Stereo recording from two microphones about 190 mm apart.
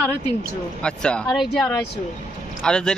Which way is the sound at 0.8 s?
5° left (ahead or behind).